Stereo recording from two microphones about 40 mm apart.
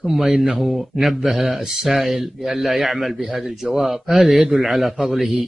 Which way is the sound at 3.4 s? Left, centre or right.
Centre.